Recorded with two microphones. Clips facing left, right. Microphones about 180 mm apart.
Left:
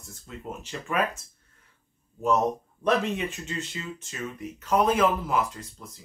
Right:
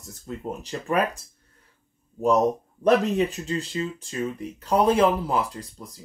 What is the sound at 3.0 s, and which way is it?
Speech, 35° right (ahead or behind).